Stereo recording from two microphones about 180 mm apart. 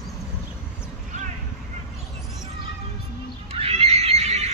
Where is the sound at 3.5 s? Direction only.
35° right (ahead or behind).